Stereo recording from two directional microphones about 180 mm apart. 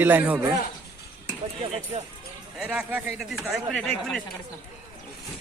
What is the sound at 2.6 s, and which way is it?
Speech, 5° right (ahead or behind).